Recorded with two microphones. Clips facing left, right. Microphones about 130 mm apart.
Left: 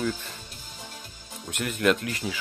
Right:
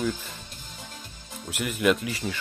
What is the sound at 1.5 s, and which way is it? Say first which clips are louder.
Speech: even; 5° right (ahead or behind).